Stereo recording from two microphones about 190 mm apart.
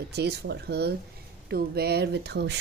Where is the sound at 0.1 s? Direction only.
60° right (ahead or behind).